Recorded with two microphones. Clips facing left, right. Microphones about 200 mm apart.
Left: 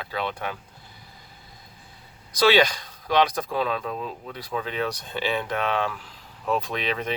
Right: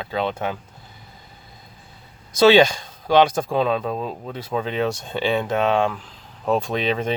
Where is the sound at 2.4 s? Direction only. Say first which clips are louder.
Right 6 dB; 25° right (ahead or behind).